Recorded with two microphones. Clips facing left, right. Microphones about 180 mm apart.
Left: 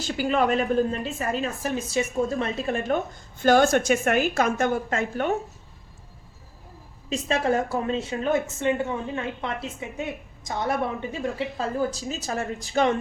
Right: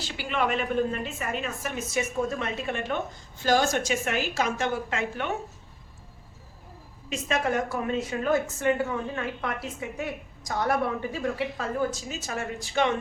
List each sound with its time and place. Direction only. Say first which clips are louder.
0.0 s a woman's voice: left 6 dB; 40° left (ahead or behind)
3.4 s a woman's voice: left 5 dB; 55° left (ahead or behind)
7.1 s a woman's voice: left 3 dB; 30° left (ahead or behind)